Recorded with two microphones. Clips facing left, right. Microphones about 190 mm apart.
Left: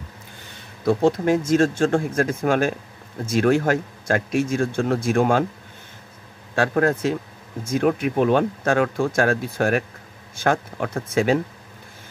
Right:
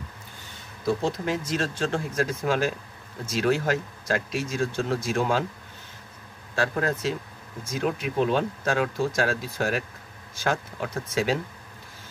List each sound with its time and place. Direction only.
0.8 s speech: 55° left (ahead or behind)
6.5 s speech: 55° left (ahead or behind)